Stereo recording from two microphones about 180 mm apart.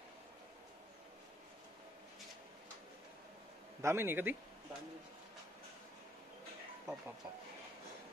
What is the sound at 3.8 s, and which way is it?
Speech, 15° right (ahead or behind).